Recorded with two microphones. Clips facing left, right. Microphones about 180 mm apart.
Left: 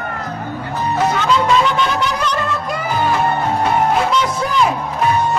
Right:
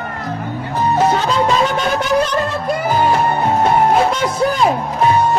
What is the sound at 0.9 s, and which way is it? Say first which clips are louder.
Music: even; 30° right (ahead or behind).